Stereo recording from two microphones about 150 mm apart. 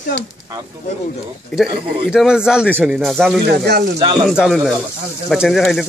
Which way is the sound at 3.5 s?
90° right.